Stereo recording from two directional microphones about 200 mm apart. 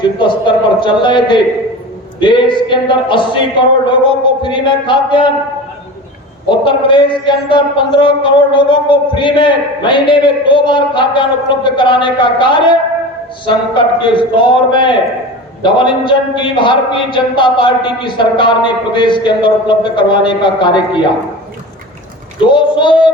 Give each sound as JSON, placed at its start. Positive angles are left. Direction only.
{"t": 0.2, "sound": "a man's voice", "side_deg": 25}
{"t": 6.5, "sound": "a man's voice", "side_deg": 25}
{"t": 14.0, "sound": "a man's voice", "side_deg": 25}
{"t": 22.5, "sound": "a man's voice", "side_deg": 25}